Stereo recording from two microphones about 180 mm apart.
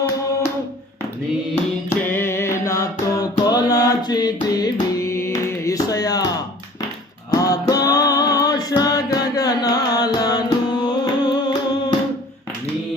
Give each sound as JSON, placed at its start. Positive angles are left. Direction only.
{"t": 1.9, "sound": "music", "side_deg": 15}
{"t": 7.3, "sound": "music", "side_deg": 20}